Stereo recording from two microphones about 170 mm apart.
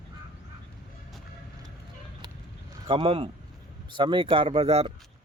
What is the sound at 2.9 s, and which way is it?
Speech, 30° right (ahead or behind).